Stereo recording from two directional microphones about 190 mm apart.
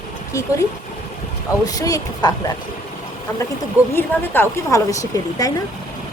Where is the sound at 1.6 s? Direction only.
20° left (ahead or behind).